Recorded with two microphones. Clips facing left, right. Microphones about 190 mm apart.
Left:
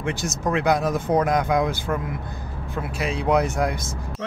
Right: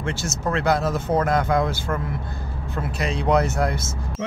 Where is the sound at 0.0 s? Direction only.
15° left (ahead or behind).